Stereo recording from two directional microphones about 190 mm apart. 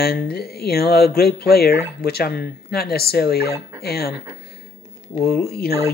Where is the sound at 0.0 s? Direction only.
55° left (ahead or behind).